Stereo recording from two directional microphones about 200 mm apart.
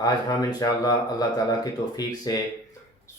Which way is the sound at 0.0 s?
20° left (ahead or behind).